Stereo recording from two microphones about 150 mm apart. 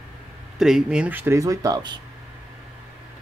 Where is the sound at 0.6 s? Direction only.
5° right (ahead or behind); by 2.0 s 25° right (ahead or behind).